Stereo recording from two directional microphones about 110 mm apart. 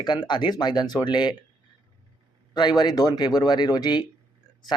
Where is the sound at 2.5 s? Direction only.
40° left (ahead or behind).